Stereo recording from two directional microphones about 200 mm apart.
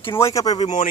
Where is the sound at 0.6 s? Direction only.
40° left (ahead or behind).